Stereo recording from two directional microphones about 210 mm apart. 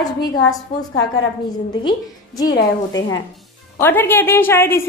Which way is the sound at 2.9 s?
65° left (ahead or behind).